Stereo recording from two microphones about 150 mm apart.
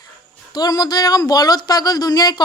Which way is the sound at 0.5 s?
25° left (ahead or behind).